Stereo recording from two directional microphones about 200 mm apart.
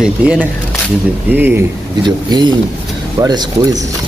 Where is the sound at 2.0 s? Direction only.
20° right (ahead or behind).